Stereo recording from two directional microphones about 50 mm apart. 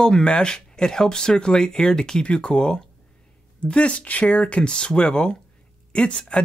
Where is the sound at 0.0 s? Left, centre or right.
Centre.